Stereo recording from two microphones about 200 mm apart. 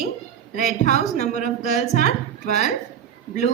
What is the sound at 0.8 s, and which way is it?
Speech, 35° left (ahead or behind).